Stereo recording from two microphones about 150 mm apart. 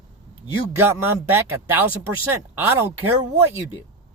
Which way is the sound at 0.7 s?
15° right (ahead or behind).